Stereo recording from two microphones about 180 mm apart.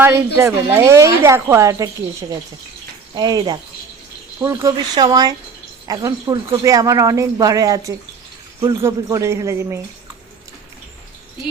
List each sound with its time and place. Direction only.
0.0 s a woman's voice: 15° right (ahead or behind)
3.2 s a woman's voice: 20° right (ahead or behind)